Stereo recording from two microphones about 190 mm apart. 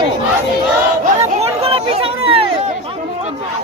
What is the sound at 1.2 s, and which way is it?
Chatter, 30° right (ahead or behind).